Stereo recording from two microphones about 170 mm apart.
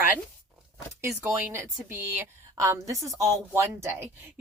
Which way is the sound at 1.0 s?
15° right (ahead or behind).